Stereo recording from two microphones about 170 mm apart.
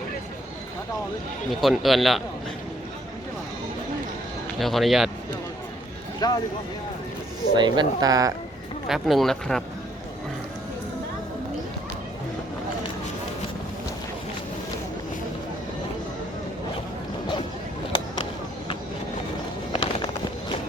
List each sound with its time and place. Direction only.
1.5 s speech: centre (ahead or behind)
4.6 s speech: centre (ahead or behind)
6.2 s speech: 25° left (ahead or behind)
7.5 s speech: 25° right (ahead or behind)
8.9 s speech: centre (ahead or behind)
19.7 s music: 30° left (ahead or behind)